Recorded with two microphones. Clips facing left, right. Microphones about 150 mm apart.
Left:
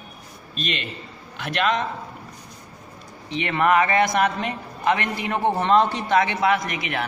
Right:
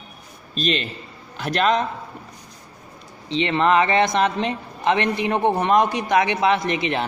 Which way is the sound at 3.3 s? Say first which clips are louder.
Right 2 dB; 25° right (ahead or behind).